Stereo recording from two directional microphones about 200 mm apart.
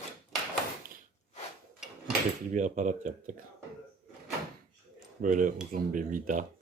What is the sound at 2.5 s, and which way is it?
Speech, 40° right (ahead or behind).